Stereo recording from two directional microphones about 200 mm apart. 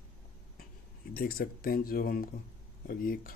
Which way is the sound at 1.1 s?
45° left (ahead or behind).